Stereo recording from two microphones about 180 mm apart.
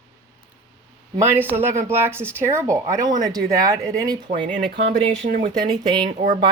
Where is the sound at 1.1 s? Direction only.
10° right (ahead or behind).